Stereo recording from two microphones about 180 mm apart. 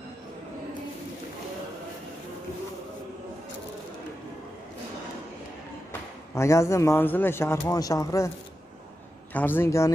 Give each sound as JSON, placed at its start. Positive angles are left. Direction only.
{"t": 6.3, "sound": "a man's voice", "side_deg": 15}
{"t": 9.3, "sound": "a man's voice", "side_deg": 10}